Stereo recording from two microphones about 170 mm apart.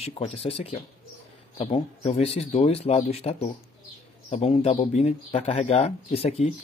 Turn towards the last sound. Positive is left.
turn(degrees=35)  # may be behind; listen again after turning